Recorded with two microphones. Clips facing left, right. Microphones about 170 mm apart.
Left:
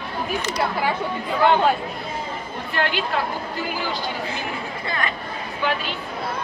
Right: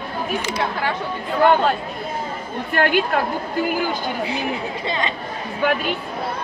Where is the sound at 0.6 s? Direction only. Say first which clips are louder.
Left 3 dB; 5° left (ahead or behind).